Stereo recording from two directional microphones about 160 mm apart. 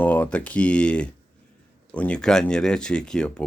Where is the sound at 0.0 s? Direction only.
10° left (ahead or behind).